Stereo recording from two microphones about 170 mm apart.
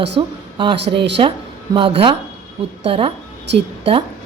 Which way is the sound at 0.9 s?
90° right.